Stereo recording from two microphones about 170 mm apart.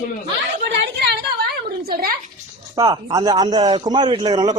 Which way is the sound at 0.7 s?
85° right.